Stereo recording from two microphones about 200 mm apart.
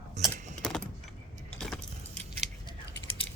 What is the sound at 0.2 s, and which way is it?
Keys jangling, 35° right (ahead or behind).